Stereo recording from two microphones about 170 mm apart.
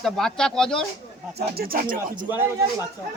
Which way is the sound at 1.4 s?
65° right (ahead or behind).